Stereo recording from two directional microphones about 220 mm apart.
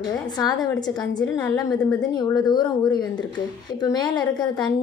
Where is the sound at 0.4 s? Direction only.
20° left (ahead or behind).